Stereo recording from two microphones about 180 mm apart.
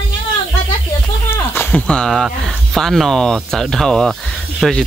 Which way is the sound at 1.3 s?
10° left (ahead or behind).